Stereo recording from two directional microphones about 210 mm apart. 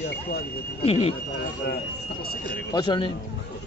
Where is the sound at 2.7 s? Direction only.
20° left (ahead or behind).